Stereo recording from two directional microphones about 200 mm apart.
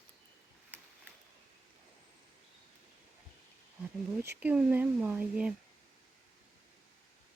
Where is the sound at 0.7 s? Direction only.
10° right (ahead or behind).